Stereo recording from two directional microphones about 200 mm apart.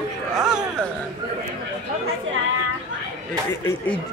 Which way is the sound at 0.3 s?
Centre (ahead or behind).